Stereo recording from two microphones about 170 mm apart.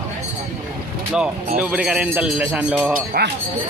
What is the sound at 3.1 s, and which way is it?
Speech, 65° right (ahead or behind).